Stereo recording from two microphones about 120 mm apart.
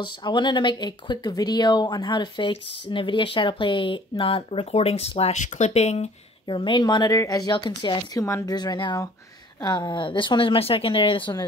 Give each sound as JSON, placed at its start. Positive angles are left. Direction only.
{"t": 0.0, "sound": "speech", "side_deg": 40}
{"t": 6.5, "sound": "speech", "side_deg": 45}
{"t": 8.2, "sound": "speech", "side_deg": 25}